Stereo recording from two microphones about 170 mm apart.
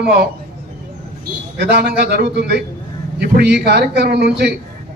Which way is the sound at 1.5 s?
75° right (ahead or behind).